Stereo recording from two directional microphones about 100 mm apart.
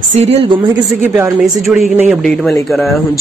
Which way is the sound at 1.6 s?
Centre (ahead or behind).